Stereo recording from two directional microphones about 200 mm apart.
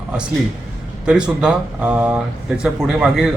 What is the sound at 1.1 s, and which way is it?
A man's voice, 5° right (ahead or behind).